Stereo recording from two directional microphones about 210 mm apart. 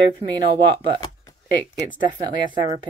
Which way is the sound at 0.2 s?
30° right (ahead or behind).